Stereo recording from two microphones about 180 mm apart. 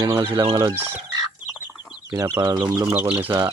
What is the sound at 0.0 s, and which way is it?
Speech, 20° right (ahead or behind).